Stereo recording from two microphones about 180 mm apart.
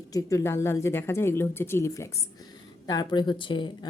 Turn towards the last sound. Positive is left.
turn(degrees=25)  # may be behind; listen again after turning